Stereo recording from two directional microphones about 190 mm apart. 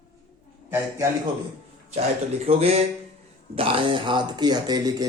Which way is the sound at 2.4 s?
30° right (ahead or behind).